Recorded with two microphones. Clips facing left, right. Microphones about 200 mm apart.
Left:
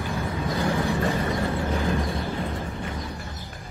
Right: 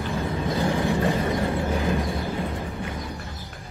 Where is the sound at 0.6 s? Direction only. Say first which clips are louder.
Right 1 dB; 15° right (ahead or behind).